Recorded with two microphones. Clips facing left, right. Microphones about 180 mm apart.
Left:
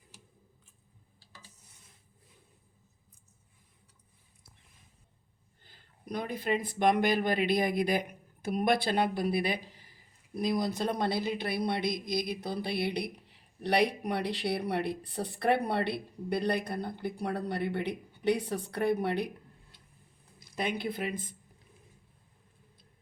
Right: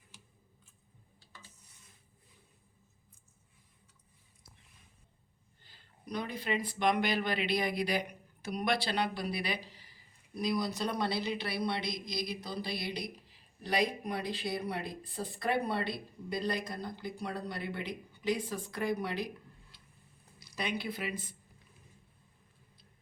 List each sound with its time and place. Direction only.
5.6 s speech: 50° left (ahead or behind)
20.4 s speech: 50° left (ahead or behind)